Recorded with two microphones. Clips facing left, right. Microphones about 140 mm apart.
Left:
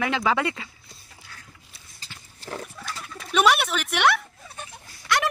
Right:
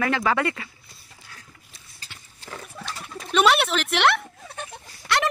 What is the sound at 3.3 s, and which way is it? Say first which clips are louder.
Speech: right 1 dB; centre (ahead or behind).